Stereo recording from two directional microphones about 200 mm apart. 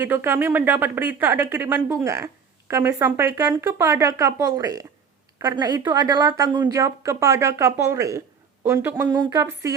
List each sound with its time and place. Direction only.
0.0 s speech: 10° right (ahead or behind)